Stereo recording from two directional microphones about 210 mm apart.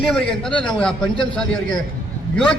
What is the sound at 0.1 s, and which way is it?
A man's voice, 5° left (ahead or behind).